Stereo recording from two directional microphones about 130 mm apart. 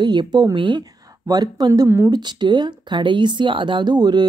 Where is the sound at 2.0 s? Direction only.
35° right (ahead or behind).